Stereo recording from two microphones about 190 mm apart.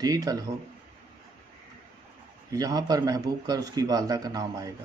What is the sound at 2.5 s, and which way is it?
Speech, 20° right (ahead or behind).